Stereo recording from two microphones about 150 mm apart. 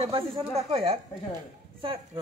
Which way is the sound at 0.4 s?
40° right (ahead or behind).